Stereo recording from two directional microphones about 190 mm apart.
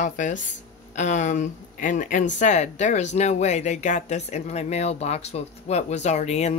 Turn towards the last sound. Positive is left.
turn(degrees=35)  # may be behind; listen again after turning